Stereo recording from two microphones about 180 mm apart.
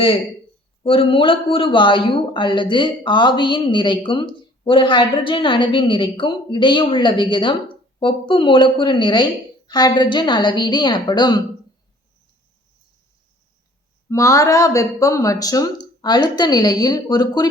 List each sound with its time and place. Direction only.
0.8 s speech: 30° left (ahead or behind)
14.1 s speech: 15° left (ahead or behind)